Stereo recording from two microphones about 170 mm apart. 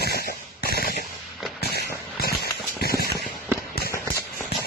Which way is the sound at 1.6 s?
70° left (ahead or behind).